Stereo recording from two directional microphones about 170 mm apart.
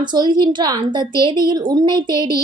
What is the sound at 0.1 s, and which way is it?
Speech, 25° right (ahead or behind).